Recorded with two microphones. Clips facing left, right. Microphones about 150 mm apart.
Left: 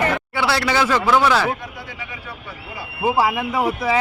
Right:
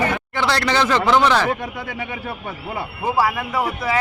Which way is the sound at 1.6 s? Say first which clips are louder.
Right 6 dB; 60° right (ahead or behind).